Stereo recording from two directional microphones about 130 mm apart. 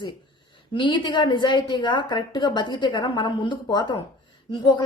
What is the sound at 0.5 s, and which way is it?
Speech, 35° left (ahead or behind).